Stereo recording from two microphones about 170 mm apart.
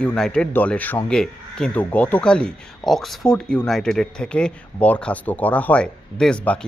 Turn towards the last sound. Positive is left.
turn(degrees=5)  # may be behind; listen again after turning